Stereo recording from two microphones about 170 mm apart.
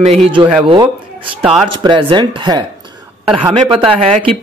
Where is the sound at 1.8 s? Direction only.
30° right (ahead or behind).